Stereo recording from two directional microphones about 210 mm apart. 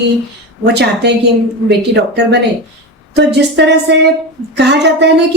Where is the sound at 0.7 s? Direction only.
55° right (ahead or behind).